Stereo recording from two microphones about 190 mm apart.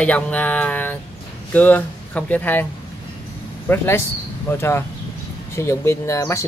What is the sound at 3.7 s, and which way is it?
Speech, 15° left (ahead or behind).